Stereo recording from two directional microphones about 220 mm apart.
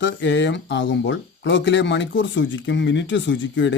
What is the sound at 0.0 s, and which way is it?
Speech, 55° left (ahead or behind).